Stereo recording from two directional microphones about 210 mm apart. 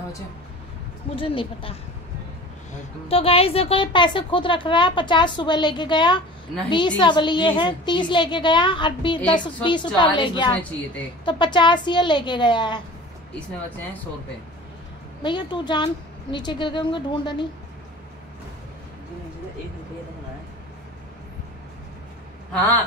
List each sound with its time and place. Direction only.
1.1 s speech: 25° left (ahead or behind)
3.1 s speech: 25° left (ahead or behind)
15.2 s speech: 20° left (ahead or behind)